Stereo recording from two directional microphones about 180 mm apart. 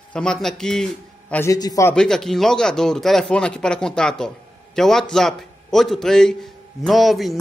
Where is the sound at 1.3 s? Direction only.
15° left (ahead or behind).